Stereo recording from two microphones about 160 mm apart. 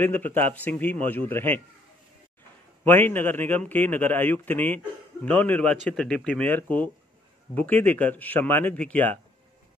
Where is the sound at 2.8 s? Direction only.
10° left (ahead or behind).